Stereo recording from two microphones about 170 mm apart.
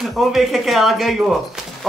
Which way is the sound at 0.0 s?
Centre (ahead or behind).